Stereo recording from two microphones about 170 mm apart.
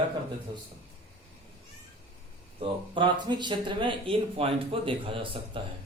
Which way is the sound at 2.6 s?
30° right (ahead or behind).